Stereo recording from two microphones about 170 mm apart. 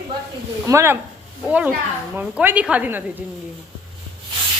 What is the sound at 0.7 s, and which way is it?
Speech, 15° right (ahead or behind).